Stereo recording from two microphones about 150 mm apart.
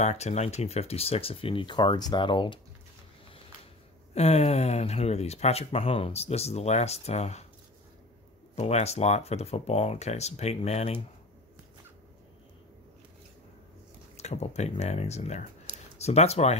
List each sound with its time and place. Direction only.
0.0 s speech: 45° left (ahead or behind)
4.1 s speech: 45° left (ahead or behind)
8.5 s speech: 45° left (ahead or behind)
14.1 s speech: 45° left (ahead or behind)